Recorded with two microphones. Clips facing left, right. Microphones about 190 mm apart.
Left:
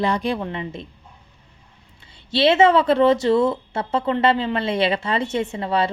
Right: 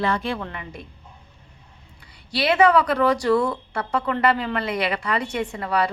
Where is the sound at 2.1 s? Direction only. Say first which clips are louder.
Left 4 dB; 25° left (ahead or behind).